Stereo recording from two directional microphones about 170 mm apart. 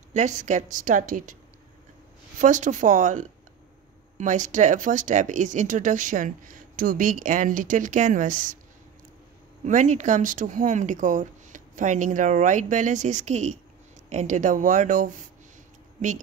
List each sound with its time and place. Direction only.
0.1 s speech: 45° right (ahead or behind)
2.4 s speech: 45° right (ahead or behind)
9.7 s speech: 45° right (ahead or behind)